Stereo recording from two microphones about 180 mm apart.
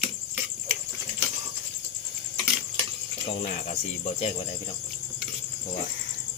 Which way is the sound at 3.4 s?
40° left (ahead or behind).